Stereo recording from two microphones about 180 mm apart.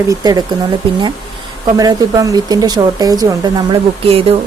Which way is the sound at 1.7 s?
20° right (ahead or behind).